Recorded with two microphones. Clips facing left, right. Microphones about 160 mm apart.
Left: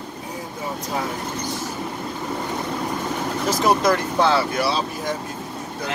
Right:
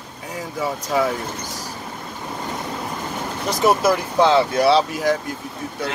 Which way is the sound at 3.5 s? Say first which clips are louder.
Right 2 dB; centre (ahead or behind).